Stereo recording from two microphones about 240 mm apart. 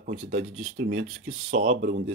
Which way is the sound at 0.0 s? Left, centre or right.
Right.